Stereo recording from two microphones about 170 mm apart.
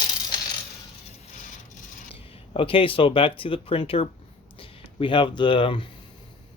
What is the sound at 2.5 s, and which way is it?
Speech, 30° left (ahead or behind).